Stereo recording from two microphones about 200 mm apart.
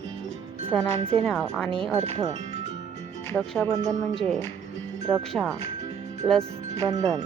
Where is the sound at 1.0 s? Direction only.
25° right (ahead or behind).